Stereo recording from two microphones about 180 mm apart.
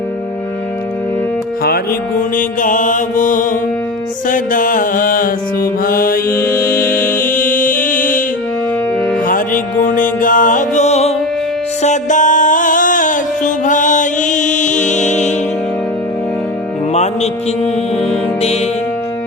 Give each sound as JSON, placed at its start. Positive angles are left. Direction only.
{"t": 1.6, "sound": "mantra", "side_deg": 55}
{"t": 6.3, "sound": "music", "side_deg": 15}
{"t": 6.7, "sound": "music", "side_deg": 55}
{"t": 9.2, "sound": "music", "side_deg": 50}
{"t": 16.9, "sound": "mantra", "side_deg": 35}